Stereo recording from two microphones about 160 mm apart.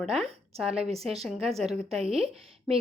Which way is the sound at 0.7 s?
40° right (ahead or behind).